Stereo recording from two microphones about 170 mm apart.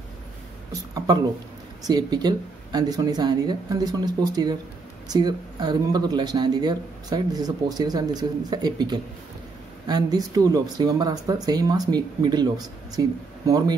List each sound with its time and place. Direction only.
0.9 s speech: 25° right (ahead or behind)